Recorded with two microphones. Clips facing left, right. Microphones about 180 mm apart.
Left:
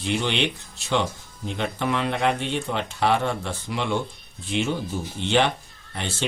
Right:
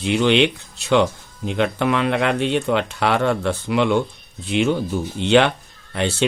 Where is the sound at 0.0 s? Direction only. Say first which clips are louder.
Right 8 dB; 75° right (ahead or behind).